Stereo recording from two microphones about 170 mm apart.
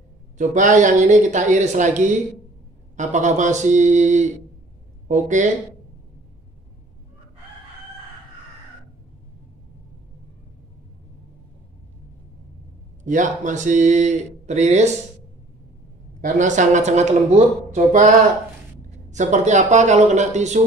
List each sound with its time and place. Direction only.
0.4 s speech: 45° right (ahead or behind)
13.0 s speech: 50° right (ahead or behind)
16.2 s speech: 45° right (ahead or behind)